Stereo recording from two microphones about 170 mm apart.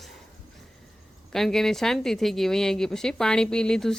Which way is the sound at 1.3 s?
Centre (ahead or behind).